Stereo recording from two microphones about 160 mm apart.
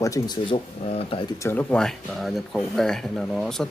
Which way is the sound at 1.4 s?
10° left (ahead or behind).